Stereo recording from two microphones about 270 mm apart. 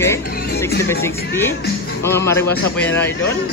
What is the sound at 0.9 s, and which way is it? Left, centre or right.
Speech, centre.